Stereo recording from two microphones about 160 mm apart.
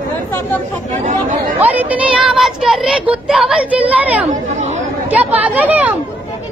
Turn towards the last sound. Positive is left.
turn(degrees=-10)  # may be behind; listen again after turning